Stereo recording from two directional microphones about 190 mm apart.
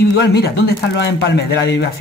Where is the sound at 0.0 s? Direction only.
60° left (ahead or behind).